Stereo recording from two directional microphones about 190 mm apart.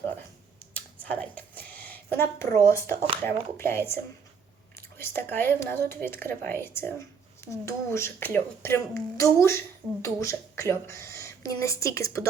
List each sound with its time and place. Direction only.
1.7 s speech: 10° left (ahead or behind)
4.9 s speech: 10° left (ahead or behind)